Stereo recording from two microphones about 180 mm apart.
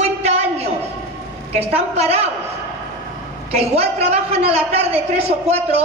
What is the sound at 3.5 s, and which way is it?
A woman's voice, 35° right (ahead or behind).